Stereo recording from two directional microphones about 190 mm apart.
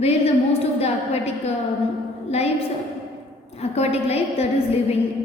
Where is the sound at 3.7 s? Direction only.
35° left (ahead or behind).